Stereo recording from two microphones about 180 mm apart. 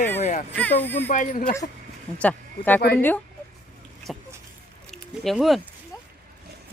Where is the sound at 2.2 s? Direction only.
10° left (ahead or behind).